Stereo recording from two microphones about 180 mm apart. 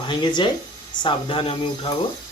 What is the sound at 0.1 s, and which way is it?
Speech, 25° left (ahead or behind).